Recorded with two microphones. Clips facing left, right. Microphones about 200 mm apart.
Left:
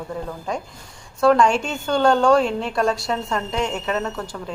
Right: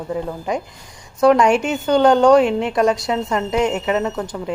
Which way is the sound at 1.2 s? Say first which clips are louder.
Right 3 dB; 20° right (ahead or behind).